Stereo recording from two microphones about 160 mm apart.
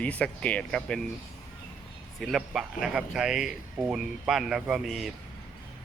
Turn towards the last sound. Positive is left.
turn(degrees=0)  # may be behind; listen again after turning